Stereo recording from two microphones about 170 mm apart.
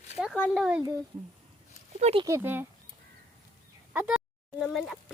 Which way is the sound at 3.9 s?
10° right (ahead or behind).